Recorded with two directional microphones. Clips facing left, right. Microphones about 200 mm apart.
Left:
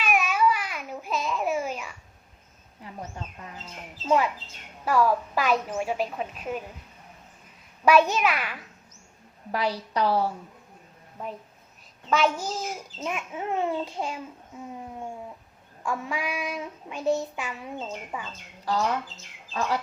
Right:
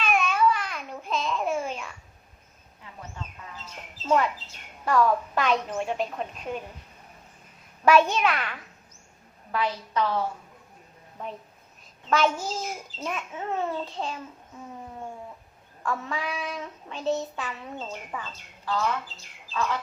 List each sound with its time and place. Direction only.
0.0 s baby cry: 5° left (ahead or behind)
4.0 s a woman's voice: 5° left (ahead or behind)
7.9 s a woman's voice: 5° left (ahead or behind)
9.5 s a woman's voice: 35° left (ahead or behind)
11.2 s a woman's voice: 5° left (ahead or behind)
12.0 s child singing: centre (ahead or behind)
15.8 s child singing: 10° left (ahead or behind)
18.6 s a woman's voice: 40° left (ahead or behind)